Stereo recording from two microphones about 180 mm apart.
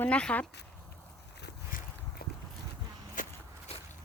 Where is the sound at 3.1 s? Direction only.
45° left (ahead or behind).